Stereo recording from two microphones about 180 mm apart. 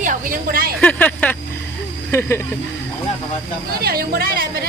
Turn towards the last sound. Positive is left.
turn(degrees=-55)  # may be behind; listen again after turning